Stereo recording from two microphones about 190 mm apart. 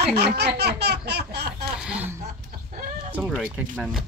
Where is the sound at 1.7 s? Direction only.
5° right (ahead or behind).